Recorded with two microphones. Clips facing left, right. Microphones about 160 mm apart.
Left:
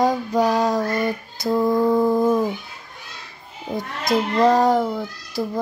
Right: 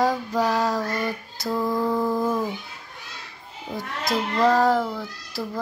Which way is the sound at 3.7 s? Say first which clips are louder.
Left 5 dB; 45° left (ahead or behind).